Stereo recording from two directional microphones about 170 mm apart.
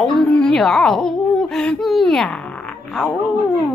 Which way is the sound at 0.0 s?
5° left (ahead or behind).